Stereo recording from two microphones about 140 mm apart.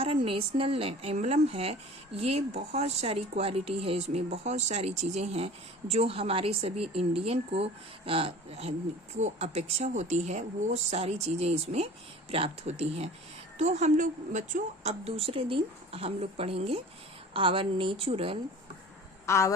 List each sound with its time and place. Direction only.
0.0 s a woman's voice: 45° right (ahead or behind)
19.2 s a man's voice: 20° left (ahead or behind)